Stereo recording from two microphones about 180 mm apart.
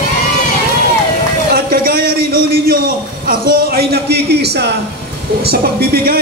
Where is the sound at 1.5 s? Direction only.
55° right (ahead or behind).